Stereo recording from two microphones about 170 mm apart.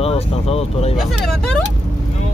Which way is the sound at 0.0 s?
35° left (ahead or behind).